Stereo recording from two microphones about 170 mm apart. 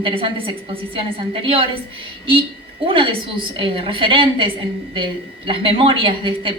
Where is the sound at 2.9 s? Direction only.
30° right (ahead or behind).